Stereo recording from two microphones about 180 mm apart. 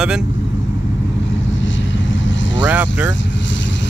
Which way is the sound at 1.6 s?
90° left.